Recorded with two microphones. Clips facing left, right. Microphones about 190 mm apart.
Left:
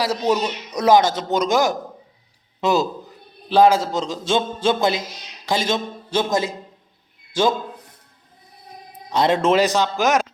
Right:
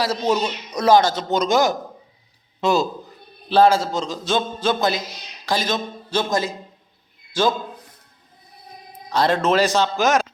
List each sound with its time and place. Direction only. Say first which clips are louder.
0.0 s a man's voice: left 1 dB; 15° left (ahead or behind)
9.0 s a man's voice: left 1 dB; 25° left (ahead or behind)